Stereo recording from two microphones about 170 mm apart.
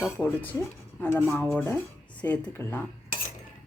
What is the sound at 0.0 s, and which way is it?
Speech, 10° left (ahead or behind).